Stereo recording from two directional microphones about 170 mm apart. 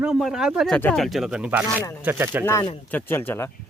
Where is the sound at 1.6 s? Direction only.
20° left (ahead or behind).